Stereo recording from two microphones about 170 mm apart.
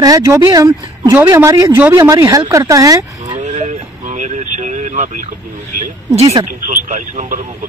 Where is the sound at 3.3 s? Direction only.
45° right (ahead or behind).